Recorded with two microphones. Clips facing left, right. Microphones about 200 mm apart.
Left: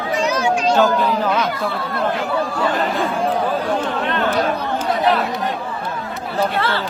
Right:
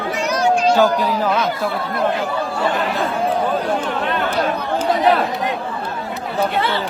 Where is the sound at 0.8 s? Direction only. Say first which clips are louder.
Even; 10° right (ahead or behind).